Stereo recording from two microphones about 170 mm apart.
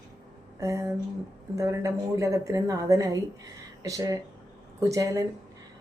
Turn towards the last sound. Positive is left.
turn(degrees=-20)  # may be behind; listen again after turning